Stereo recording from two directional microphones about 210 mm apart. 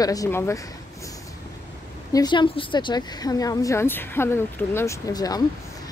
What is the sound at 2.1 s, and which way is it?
A woman's voice, 20° left (ahead or behind).